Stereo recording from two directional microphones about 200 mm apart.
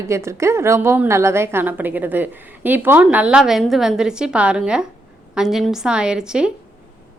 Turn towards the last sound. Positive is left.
turn(degrees=-5)  # may be behind; listen again after turning